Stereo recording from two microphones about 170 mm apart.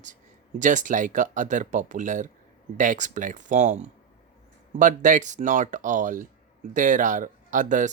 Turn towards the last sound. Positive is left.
turn(degrees=-50)  # may be behind; listen again after turning